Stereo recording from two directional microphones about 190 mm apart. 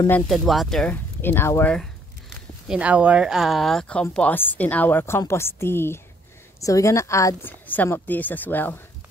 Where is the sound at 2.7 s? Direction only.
5° right (ahead or behind); by 8.8 s 10° left (ahead or behind).